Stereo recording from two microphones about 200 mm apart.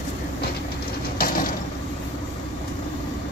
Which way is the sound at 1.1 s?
45° left (ahead or behind).